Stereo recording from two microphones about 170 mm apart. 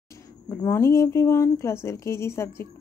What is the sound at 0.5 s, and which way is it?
Speech, 15° left (ahead or behind).